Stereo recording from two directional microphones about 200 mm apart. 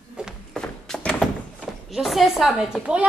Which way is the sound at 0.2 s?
5° left (ahead or behind).